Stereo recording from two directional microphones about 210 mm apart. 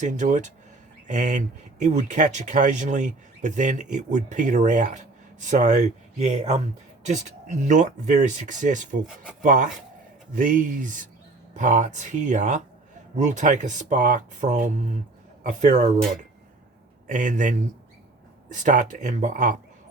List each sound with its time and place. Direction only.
0.0 s speech: 35° right (ahead or behind)
17.1 s speech: 35° right (ahead or behind)